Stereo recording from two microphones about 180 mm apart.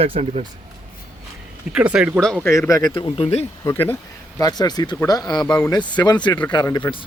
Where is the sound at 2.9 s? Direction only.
30° left (ahead or behind).